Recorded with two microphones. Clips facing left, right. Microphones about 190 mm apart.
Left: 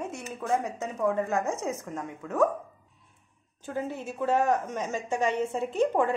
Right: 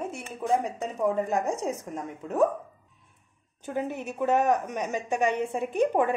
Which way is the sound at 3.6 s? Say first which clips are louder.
Right 2 dB; 20° right (ahead or behind).